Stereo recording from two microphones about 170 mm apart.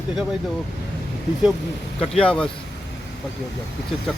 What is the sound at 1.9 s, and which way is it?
Speech, 5° left (ahead or behind).